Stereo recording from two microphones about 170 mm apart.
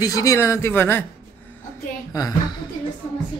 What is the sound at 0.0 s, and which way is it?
Speech, 20° left (ahead or behind).